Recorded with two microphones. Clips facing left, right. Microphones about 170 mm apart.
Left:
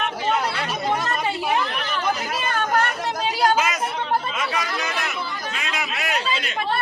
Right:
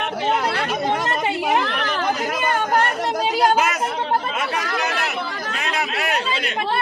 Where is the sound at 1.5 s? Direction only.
80° right.